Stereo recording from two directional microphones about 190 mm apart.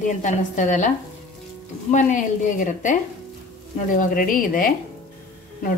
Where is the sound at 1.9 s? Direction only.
40° left (ahead or behind).